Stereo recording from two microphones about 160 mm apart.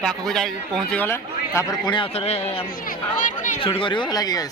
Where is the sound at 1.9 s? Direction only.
35° left (ahead or behind).